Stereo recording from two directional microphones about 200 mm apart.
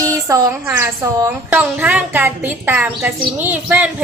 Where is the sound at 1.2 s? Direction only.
10° right (ahead or behind).